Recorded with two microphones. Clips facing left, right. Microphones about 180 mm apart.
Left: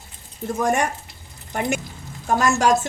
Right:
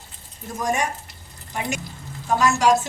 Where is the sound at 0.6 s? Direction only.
55° left (ahead or behind).